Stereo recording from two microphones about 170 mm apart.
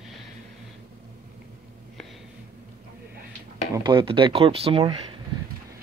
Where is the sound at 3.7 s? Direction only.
25° right (ahead or behind).